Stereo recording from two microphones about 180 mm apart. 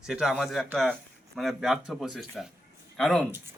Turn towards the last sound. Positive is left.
turn(degrees=0)  # may be behind; listen again after turning